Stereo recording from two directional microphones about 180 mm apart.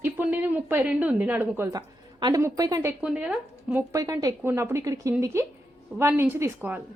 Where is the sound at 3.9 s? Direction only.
20° right (ahead or behind).